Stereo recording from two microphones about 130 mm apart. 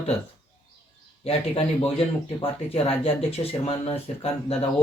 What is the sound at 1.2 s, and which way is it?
Speech, 50° left (ahead or behind).